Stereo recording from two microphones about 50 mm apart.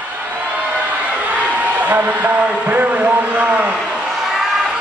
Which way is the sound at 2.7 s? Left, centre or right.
Right.